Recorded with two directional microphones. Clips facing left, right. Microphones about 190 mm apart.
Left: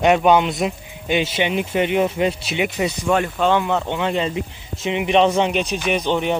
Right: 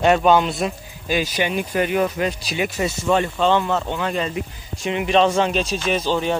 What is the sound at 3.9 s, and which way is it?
Speech, 25° left (ahead or behind).